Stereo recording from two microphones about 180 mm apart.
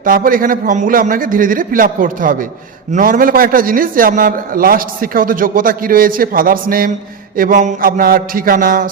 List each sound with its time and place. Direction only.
0.0 s a man's voice: 50° right (ahead or behind)